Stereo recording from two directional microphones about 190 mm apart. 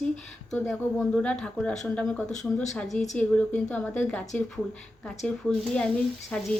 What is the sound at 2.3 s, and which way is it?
Speech, 40° left (ahead or behind).